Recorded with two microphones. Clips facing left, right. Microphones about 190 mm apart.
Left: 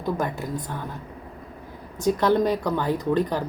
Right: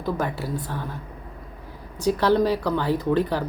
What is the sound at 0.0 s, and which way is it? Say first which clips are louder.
Speech: even; 15° left (ahead or behind).